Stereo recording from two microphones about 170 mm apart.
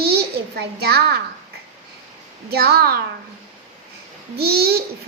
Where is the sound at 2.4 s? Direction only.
65° right (ahead or behind).